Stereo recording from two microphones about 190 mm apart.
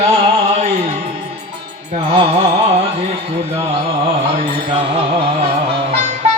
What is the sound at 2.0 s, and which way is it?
Carnatic music, 25° right (ahead or behind).